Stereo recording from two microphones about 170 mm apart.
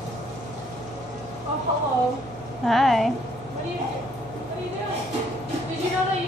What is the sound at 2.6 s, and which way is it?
Speech, centre (ahead or behind).